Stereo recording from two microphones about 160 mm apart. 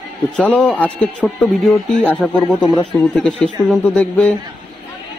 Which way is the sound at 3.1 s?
5° left (ahead or behind).